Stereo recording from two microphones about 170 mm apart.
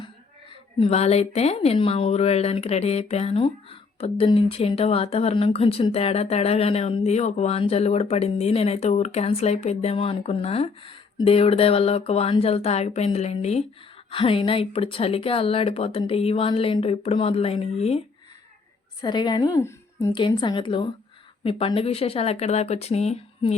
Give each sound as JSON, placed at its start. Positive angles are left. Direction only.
{"t": 0.8, "sound": "speech", "side_deg": 35}
{"t": 19.0, "sound": "a woman's voice", "side_deg": 25}
{"t": 20.1, "sound": "a woman's voice", "side_deg": 30}